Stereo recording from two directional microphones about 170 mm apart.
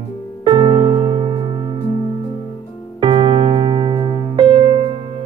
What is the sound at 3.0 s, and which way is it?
Music, 30° right (ahead or behind).